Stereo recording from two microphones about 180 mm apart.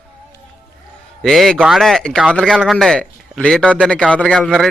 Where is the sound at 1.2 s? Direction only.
Centre (ahead or behind).